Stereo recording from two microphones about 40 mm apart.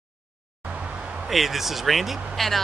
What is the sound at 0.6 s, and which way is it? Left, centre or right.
Vehicle, right.